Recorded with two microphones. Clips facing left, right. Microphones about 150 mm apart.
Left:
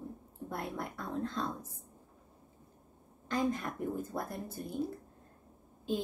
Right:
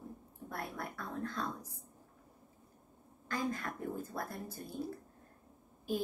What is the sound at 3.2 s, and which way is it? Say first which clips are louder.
A woman's voice: left 5 dB; 20° left (ahead or behind).